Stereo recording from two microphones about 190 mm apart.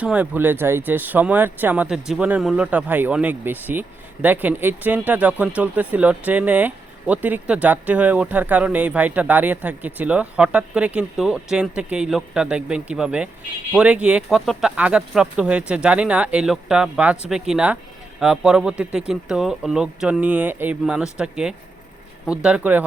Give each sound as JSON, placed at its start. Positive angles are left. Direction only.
{"t": 0.0, "sound": "speech", "side_deg": -5}